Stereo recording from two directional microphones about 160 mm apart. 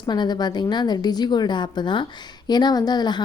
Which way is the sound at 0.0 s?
25° left (ahead or behind).